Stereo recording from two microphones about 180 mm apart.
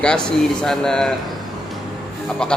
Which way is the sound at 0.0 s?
5° left (ahead or behind).